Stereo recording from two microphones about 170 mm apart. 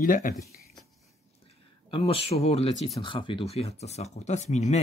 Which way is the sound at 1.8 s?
30° left (ahead or behind).